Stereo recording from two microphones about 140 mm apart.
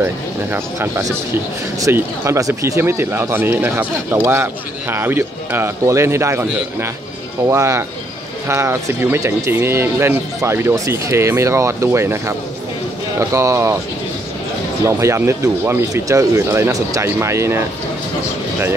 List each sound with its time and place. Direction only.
0.0 s speech: 15° right (ahead or behind)
7.4 s speech: 20° right (ahead or behind)
14.9 s speech: 20° right (ahead or behind)